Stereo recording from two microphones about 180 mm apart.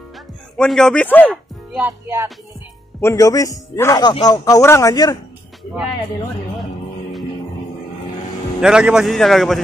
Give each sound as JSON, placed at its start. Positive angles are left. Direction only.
{"t": 0.6, "sound": "a man's voice", "side_deg": 5}
{"t": 1.7, "sound": "speech", "side_deg": -10}
{"t": 3.0, "sound": "a man's voice", "side_deg": 15}
{"t": 8.5, "sound": "a man's voice", "side_deg": -5}